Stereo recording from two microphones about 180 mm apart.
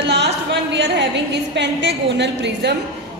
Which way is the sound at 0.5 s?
75° right (ahead or behind).